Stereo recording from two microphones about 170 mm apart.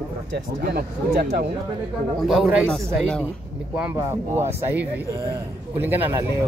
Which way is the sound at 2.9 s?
5° left (ahead or behind).